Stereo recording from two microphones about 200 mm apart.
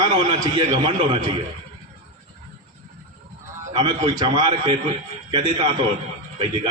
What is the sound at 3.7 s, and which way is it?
A man's voice, 25° right (ahead or behind).